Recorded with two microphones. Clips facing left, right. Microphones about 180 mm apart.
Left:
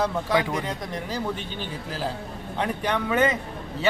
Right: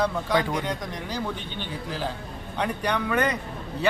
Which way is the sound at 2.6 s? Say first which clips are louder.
Even; centre (ahead or behind).